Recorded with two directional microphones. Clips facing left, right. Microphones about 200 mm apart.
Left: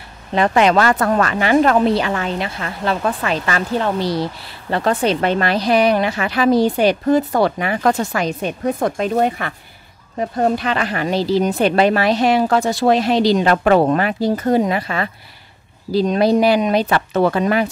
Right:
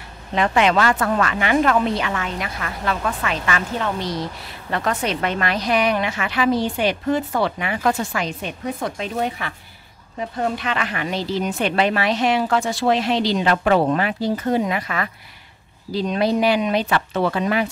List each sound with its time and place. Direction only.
0.3 s speech: 40° left (ahead or behind)
10.1 s speech: 40° left (ahead or behind)